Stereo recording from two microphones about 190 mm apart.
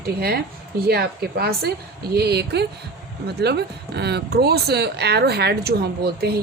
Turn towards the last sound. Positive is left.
turn(degrees=-55)  # may be behind; listen again after turning